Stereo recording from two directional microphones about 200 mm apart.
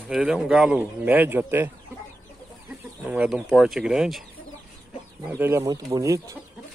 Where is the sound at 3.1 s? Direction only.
5° right (ahead or behind).